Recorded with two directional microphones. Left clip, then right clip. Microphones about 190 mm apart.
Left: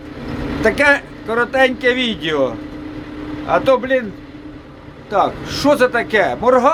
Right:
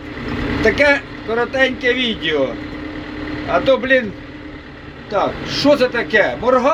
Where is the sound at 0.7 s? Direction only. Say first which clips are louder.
Left 1 dB; 15° left (ahead or behind).